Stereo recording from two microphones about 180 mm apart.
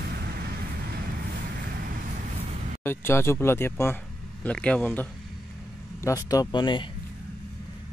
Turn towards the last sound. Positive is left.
turn(degrees=25)  # may be behind; listen again after turning